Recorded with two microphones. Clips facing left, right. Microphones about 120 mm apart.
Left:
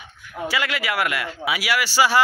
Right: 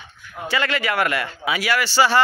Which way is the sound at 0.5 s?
10° left (ahead or behind).